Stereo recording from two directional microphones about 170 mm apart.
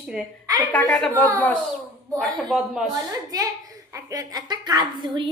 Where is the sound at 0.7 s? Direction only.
5° left (ahead or behind).